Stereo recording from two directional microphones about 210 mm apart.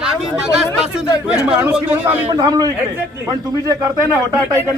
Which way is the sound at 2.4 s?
15° right (ahead or behind).